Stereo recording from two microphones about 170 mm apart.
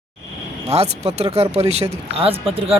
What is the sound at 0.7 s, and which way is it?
Speech, 35° right (ahead or behind).